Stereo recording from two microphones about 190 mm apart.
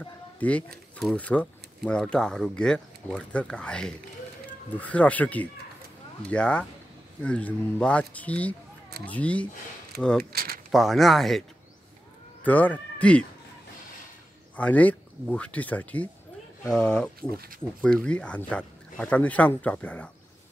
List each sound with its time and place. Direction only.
0.0 s speech: 5° left (ahead or behind)
9.9 s speech: 55° right (ahead or behind)
10.7 s speech: centre (ahead or behind)
12.4 s speech: 10° left (ahead or behind)
14.6 s speech: 10° left (ahead or behind)